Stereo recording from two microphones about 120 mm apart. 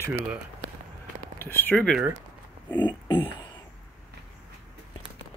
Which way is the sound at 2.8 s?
40° left (ahead or behind).